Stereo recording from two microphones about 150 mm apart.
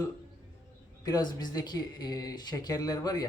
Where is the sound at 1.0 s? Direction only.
25° left (ahead or behind).